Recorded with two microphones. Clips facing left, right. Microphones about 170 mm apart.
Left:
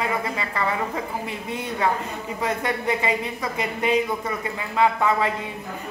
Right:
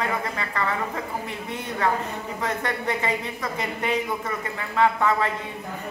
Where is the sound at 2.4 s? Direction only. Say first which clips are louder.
Left 3 dB; 10° left (ahead or behind).